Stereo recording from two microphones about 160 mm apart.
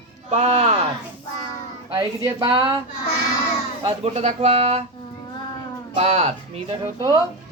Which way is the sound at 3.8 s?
40° right (ahead or behind).